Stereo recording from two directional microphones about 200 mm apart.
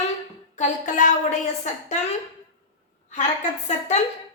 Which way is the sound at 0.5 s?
35° left (ahead or behind).